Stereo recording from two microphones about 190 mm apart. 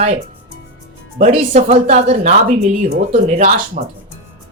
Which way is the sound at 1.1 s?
35° right (ahead or behind).